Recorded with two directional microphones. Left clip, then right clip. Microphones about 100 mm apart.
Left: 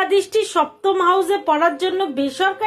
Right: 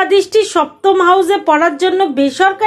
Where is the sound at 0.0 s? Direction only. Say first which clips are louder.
Right 6 dB; 25° right (ahead or behind).